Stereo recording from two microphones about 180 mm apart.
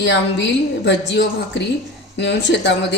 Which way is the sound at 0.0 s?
75° left (ahead or behind).